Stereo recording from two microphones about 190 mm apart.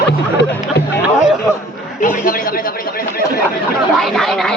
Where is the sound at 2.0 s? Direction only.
45° left (ahead or behind).